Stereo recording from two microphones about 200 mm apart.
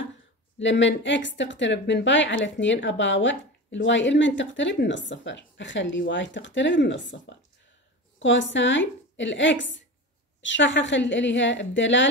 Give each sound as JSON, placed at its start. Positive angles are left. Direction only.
{"t": 0.6, "sound": "a woman's voice", "side_deg": 65}